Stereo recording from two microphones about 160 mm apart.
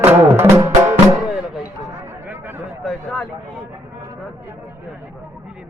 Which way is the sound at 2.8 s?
Centre (ahead or behind).